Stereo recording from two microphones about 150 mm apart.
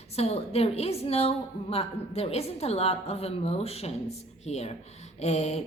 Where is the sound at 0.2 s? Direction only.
40° left (ahead or behind).